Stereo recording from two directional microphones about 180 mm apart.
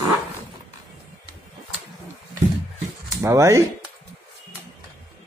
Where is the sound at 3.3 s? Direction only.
15° right (ahead or behind).